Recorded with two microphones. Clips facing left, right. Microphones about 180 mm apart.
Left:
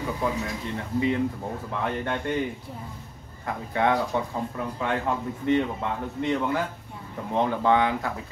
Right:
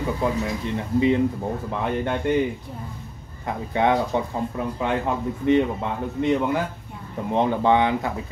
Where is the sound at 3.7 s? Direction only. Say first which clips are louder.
Right 3 dB; 20° right (ahead or behind).